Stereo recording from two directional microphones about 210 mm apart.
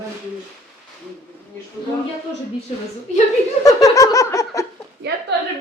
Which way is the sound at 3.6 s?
15° left (ahead or behind).